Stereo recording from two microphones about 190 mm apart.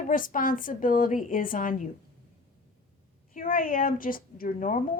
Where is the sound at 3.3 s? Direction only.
50° left (ahead or behind).